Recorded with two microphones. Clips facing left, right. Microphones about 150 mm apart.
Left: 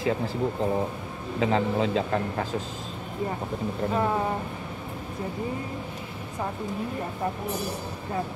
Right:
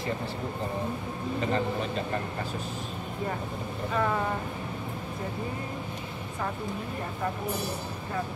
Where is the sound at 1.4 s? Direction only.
90° left.